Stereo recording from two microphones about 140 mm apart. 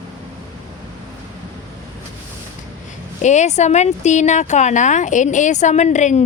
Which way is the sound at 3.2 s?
55° left (ahead or behind).